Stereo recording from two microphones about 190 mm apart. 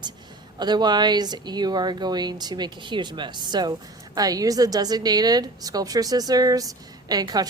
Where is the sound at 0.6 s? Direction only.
20° right (ahead or behind).